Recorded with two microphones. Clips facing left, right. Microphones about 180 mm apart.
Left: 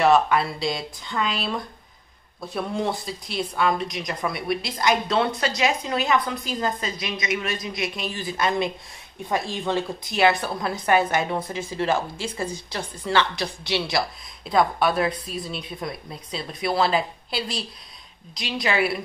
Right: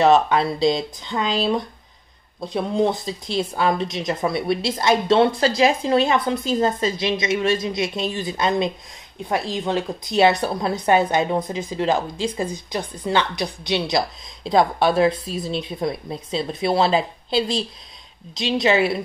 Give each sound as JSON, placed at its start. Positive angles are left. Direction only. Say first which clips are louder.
{"t": 0.0, "sound": "speech", "louder": "right 3 dB", "side_deg": -25}
{"t": 2.4, "sound": "a woman's voice", "louder": "right 6 dB", "side_deg": -20}
{"t": 10.0, "sound": "a woman's voice", "louder": "right 4 dB", "side_deg": -25}